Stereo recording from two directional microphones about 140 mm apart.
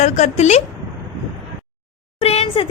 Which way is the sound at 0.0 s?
55° left (ahead or behind).